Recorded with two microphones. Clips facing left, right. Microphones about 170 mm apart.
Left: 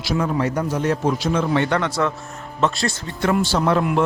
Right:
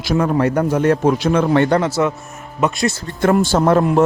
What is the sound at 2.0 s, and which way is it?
Speech, 20° right (ahead or behind).